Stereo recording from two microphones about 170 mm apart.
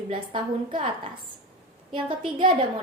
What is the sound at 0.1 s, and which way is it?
A woman's voice, 30° right (ahead or behind).